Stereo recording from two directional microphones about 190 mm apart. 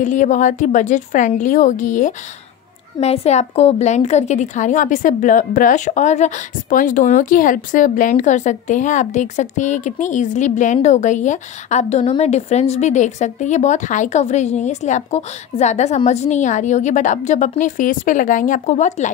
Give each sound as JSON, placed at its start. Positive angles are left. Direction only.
{"t": 0.0, "sound": "a woman's voice", "side_deg": 40}